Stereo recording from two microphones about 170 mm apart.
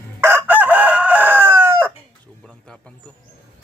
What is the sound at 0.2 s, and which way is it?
Chicken, 15° right (ahead or behind).